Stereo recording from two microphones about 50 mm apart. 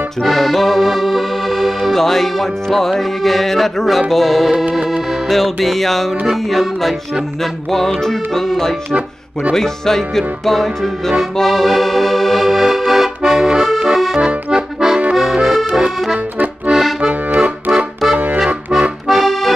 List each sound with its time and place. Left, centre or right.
0.2 s accordion: centre
4.1 s music: centre
8.0 s music: centre
11.3 s accordion: centre
16.7 s accordion: centre
17.4 s music: centre
18.1 s music: right
18.7 s accordion: centre
19.0 s accordion: centre